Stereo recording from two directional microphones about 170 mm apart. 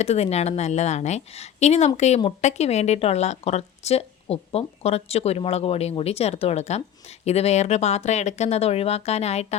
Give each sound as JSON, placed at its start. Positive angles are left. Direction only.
{"t": 0.0, "sound": "speech", "side_deg": 40}